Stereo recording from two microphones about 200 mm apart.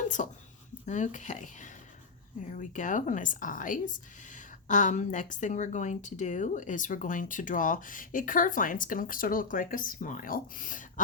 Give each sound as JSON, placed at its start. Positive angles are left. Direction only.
{"t": 0.2, "sound": "speech", "side_deg": 40}